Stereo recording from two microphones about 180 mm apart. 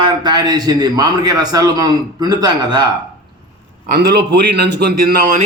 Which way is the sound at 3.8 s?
55° right (ahead or behind).